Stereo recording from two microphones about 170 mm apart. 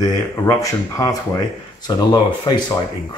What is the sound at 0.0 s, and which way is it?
Speech, 20° left (ahead or behind).